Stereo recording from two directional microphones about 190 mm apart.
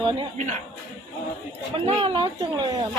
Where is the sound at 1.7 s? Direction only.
30° right (ahead or behind).